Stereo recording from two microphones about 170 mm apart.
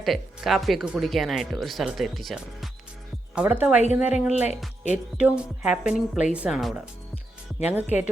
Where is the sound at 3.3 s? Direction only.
10° right (ahead or behind).